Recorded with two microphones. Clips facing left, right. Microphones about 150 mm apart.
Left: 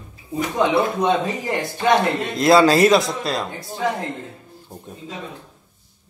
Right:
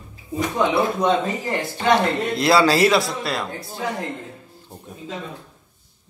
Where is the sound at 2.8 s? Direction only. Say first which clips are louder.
Left 3 dB; 20° left (ahead or behind).